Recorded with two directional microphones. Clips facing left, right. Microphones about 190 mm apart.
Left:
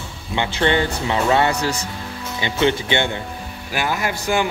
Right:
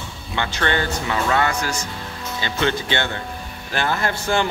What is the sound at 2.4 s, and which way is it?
Speech, 20° left (ahead or behind).